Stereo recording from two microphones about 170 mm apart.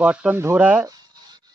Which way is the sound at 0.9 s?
25° right (ahead or behind).